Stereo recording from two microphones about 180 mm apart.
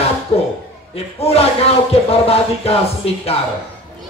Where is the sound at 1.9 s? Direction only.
35° left (ahead or behind).